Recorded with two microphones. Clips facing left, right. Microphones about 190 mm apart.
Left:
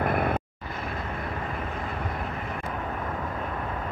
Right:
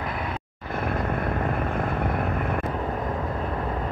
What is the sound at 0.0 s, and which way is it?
Vehicle, 55° left (ahead or behind).